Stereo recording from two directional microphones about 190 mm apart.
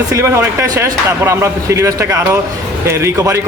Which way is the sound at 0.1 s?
10° right (ahead or behind).